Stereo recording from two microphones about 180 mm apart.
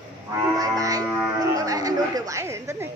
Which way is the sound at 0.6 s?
20° right (ahead or behind).